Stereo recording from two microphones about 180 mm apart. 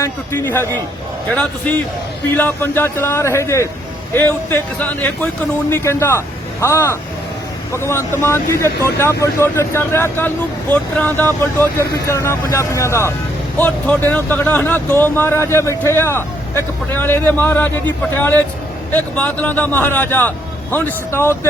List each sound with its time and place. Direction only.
0.0 s a man's voice: 15° left (ahead or behind)